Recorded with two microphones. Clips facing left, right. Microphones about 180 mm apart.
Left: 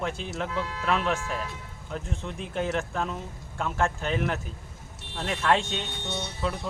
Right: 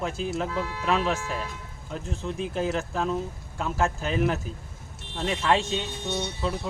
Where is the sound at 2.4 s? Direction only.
35° right (ahead or behind).